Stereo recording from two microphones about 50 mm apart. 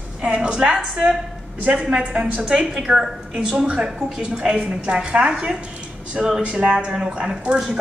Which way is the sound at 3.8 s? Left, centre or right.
Centre.